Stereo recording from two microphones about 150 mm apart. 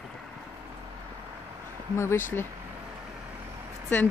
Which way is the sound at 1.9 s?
15° left (ahead or behind).